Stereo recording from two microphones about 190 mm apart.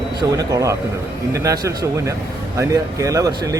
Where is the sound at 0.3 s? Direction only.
20° right (ahead or behind).